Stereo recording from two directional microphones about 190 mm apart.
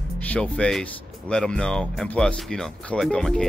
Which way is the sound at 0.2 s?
5° left (ahead or behind).